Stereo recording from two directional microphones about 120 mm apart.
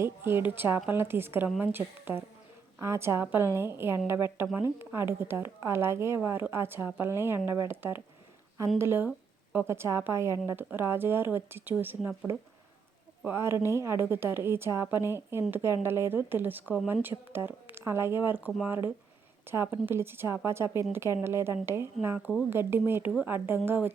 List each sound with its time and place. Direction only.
0.0 s speech: 20° right (ahead or behind)
13.2 s speech: 20° right (ahead or behind)